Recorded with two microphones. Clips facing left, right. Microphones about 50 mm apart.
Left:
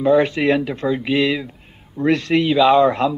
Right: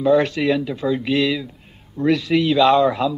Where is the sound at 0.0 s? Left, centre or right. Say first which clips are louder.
Left 1 dB; centre.